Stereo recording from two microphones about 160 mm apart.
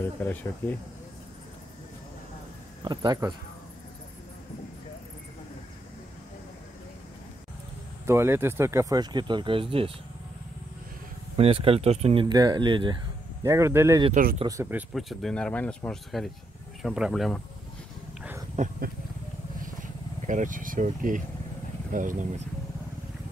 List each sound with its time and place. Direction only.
0.0 s speech: 10° left (ahead or behind)
2.8 s speech: 25° right (ahead or behind)
8.1 s speech: 15° right (ahead or behind); by 9.9 s 35° right (ahead or behind)
11.3 s speech: 40° right (ahead or behind)
13.4 s speech: 15° right (ahead or behind)
15.0 s speech: centre (ahead or behind)
18.6 s speech: 50° right (ahead or behind)
19.6 s vehicle: 55° right (ahead or behind)
21.9 s speech: 55° right (ahead or behind)